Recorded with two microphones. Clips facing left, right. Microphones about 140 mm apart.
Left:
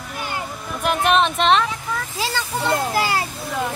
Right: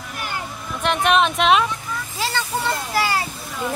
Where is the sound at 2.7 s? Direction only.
55° left (ahead or behind).